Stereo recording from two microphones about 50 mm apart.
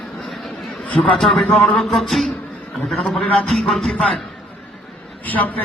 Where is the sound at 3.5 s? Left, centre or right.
Centre.